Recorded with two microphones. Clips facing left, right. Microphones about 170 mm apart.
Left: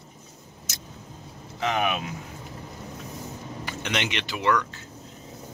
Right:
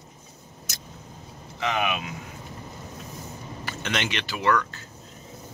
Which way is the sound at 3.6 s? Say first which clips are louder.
Even; 15° left (ahead or behind).